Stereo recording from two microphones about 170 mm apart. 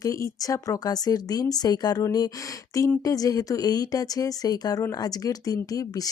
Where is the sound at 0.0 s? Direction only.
20° left (ahead or behind).